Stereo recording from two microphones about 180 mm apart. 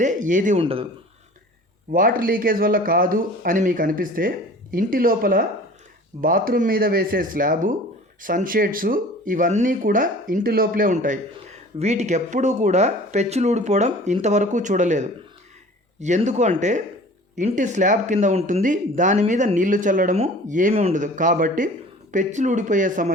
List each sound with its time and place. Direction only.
0.0 s speech: 45° right (ahead or behind)
0.6 s speech: 30° right (ahead or behind)
1.9 s speech: 50° right (ahead or behind)